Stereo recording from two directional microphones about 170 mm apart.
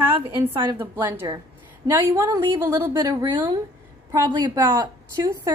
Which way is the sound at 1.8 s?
20° right (ahead or behind).